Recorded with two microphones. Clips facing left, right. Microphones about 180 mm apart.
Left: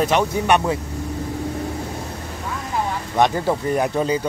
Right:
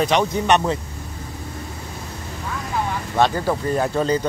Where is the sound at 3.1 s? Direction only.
20° left (ahead or behind).